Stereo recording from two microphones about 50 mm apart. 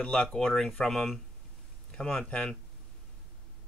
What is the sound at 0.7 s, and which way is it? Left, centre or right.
Speech, centre.